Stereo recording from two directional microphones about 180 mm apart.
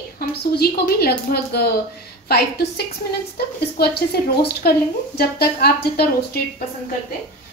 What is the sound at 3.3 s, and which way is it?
A woman's voice, 60° left (ahead or behind).